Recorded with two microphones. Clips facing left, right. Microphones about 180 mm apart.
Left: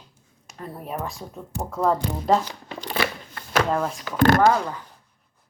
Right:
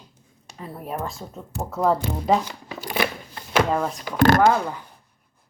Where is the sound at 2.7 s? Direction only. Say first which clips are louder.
Right 1 dB; 5° right (ahead or behind).